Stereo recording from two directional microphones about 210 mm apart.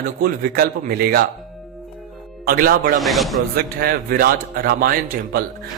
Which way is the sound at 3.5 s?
45° right (ahead or behind).